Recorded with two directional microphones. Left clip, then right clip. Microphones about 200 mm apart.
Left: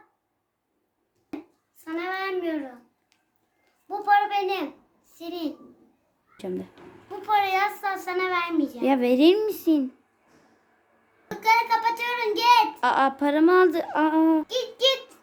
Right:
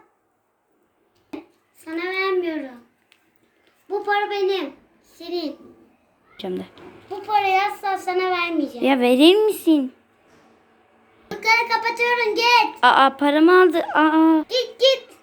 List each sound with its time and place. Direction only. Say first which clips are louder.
1.8 s child singing: right 5 dB; 15° left (ahead or behind)
3.8 s a sound: even; 20° left (ahead or behind)
6.3 s a child's voice: right 4 dB; 5° left (ahead or behind)
8.8 s a woman's voice: right 5 dB; centre (ahead or behind)
11.4 s child singing: right 2 dB; 10° left (ahead or behind)
12.3 s a child's voice: left 3 dB; 15° left (ahead or behind)
12.8 s speech: right 7 dB; centre (ahead or behind)